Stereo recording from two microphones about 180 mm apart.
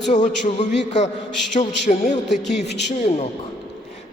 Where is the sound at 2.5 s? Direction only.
70° left (ahead or behind).